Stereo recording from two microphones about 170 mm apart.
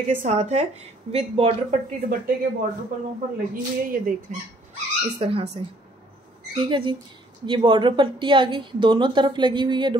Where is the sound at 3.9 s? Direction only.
55° right (ahead or behind).